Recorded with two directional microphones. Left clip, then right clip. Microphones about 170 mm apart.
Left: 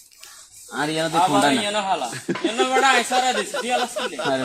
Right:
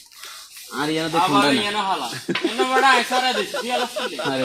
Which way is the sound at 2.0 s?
Centre (ahead or behind).